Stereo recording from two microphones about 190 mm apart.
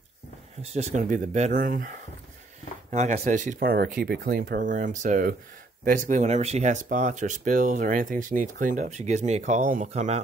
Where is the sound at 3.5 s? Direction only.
50° right (ahead or behind).